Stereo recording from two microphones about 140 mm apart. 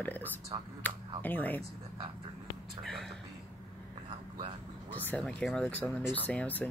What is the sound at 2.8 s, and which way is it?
Speech, centre (ahead or behind).